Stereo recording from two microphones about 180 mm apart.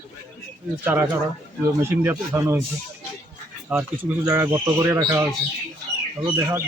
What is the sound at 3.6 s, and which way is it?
Speech, 10° right (ahead or behind).